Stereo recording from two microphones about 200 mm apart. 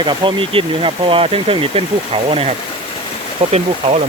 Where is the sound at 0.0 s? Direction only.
25° right (ahead or behind).